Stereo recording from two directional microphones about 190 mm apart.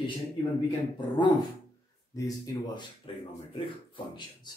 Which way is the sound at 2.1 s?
20° left (ahead or behind).